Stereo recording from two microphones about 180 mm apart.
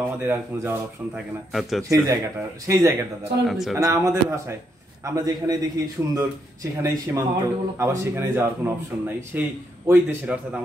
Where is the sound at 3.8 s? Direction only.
20° right (ahead or behind).